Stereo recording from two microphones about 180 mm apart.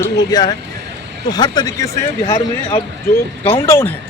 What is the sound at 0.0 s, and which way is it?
Speech, 20° left (ahead or behind).